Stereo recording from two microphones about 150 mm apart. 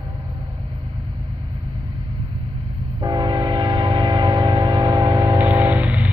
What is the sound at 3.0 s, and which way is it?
Train, 30° right (ahead or behind).